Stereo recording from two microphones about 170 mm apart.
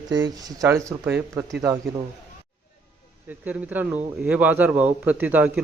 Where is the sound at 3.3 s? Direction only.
10° right (ahead or behind).